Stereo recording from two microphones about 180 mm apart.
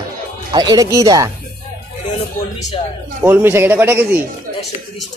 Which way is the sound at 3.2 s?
10° right (ahead or behind).